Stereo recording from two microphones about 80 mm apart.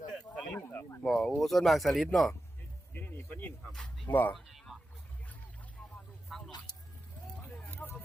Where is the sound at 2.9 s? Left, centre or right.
Left.